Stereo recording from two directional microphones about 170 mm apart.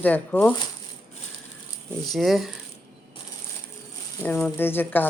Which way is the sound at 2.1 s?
Centre (ahead or behind).